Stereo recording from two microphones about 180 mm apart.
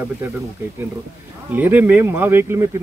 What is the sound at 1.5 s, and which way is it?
Speech, 10° right (ahead or behind).